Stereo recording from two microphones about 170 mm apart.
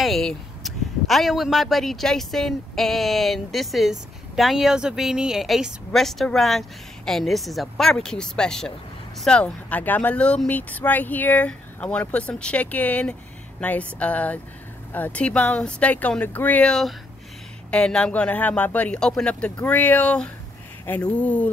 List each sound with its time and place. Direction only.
0.0 s speech: centre (ahead or behind)